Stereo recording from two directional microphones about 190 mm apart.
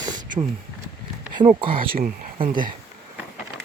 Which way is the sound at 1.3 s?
25° right (ahead or behind).